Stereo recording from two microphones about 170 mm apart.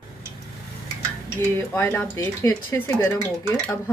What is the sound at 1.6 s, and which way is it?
Speech, 15° left (ahead or behind).